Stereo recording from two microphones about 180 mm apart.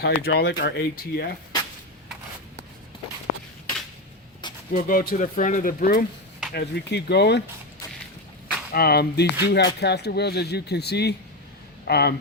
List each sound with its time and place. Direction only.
0.0 s speech: 65° left (ahead or behind)
4.7 s speech: 55° left (ahead or behind)
6.5 s speech: 65° left (ahead or behind)
8.7 s speech: 60° left (ahead or behind)